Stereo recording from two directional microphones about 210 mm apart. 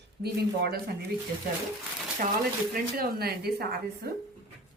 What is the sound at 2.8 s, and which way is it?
Speech, 45° right (ahead or behind).